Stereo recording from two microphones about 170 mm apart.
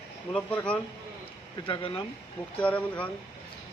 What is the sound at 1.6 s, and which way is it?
Speech, 30° left (ahead or behind).